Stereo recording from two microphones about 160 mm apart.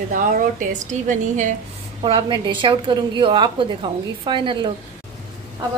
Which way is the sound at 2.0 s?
30° right (ahead or behind).